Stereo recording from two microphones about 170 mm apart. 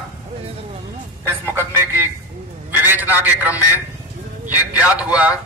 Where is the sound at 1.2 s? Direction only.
15° right (ahead or behind).